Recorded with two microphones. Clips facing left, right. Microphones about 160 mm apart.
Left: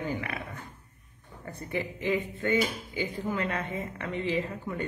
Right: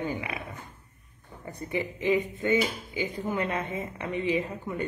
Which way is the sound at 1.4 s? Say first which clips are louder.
Right 2 dB; 15° right (ahead or behind).